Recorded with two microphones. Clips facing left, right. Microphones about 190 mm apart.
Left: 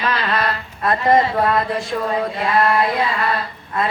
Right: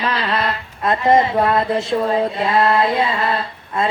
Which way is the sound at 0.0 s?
25° right (ahead or behind).